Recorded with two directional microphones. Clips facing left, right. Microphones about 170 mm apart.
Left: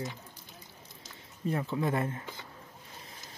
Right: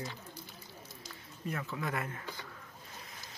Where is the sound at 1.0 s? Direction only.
30° left (ahead or behind).